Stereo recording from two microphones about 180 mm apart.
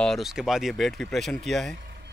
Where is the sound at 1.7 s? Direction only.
60° right (ahead or behind).